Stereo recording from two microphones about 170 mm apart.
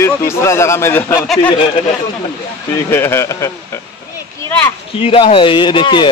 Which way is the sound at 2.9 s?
15° left (ahead or behind).